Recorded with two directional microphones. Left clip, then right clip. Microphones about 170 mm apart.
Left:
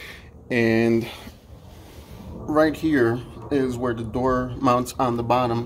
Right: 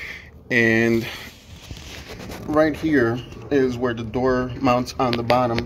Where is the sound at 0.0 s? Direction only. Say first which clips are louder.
Right 6 dB; 5° left (ahead or behind).